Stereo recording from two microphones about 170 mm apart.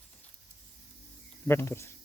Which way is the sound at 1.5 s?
15° left (ahead or behind).